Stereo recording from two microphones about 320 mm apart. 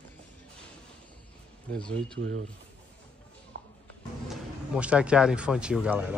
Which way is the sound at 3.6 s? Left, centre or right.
Right.